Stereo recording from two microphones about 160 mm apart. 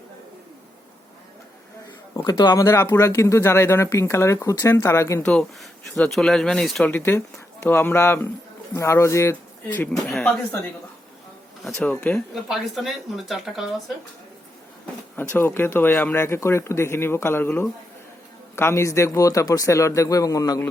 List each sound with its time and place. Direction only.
2.1 s speech: 25° left (ahead or behind)
5.2 s speech: 5° left (ahead or behind)
6.9 s speech: 15° left (ahead or behind)
11.6 s speech: 10° left (ahead or behind)
12.3 s speech: centre (ahead or behind)
15.1 s a man's voice: 10° left (ahead or behind)